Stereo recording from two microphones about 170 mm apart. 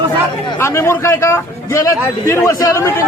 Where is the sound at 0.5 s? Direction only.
15° left (ahead or behind).